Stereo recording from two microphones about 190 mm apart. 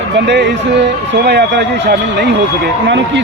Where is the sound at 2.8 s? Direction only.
70° right (ahead or behind).